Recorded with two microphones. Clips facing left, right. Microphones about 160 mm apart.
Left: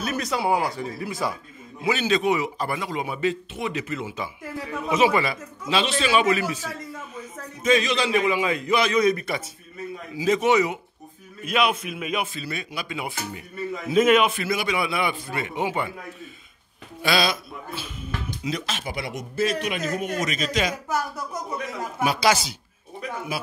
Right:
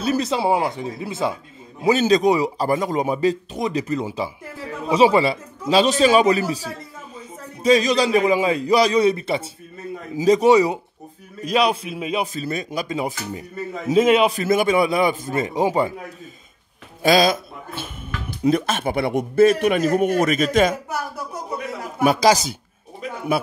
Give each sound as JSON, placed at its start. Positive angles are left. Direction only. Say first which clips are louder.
{"t": 0.0, "sound": "speech", "louder": "right 5 dB", "side_deg": -30}
{"t": 1.8, "sound": "a man's voice", "louder": "right 6 dB", "side_deg": -40}
{"t": 17.0, "sound": "a man's voice", "louder": "right 7 dB", "side_deg": -45}
{"t": 22.0, "sound": "a man's voice", "louder": "right 6 dB", "side_deg": -45}